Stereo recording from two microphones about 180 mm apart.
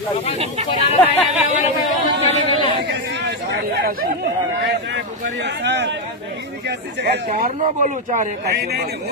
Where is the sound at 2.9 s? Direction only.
70° right (ahead or behind).